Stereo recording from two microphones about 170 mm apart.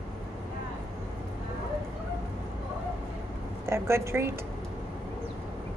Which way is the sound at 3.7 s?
15° right (ahead or behind).